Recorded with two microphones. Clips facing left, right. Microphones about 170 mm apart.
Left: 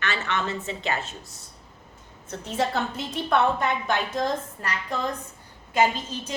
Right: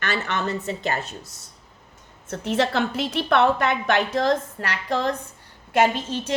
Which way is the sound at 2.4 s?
75° right (ahead or behind).